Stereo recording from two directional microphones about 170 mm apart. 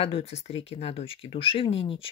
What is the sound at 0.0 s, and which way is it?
Speech, 35° left (ahead or behind).